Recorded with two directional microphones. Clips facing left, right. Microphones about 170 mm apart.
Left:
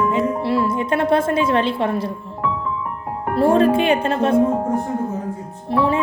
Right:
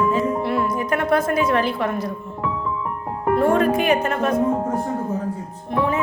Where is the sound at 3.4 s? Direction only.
30° left (ahead or behind).